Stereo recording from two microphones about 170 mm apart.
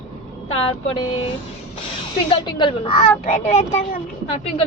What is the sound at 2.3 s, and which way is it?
Speech, 25° left (ahead or behind).